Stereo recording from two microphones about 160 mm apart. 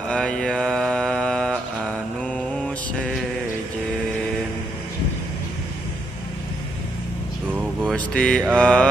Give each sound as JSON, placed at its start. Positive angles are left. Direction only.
{"t": 0.1, "sound": "mantra", "side_deg": 5}
{"t": 7.8, "sound": "mantra", "side_deg": 5}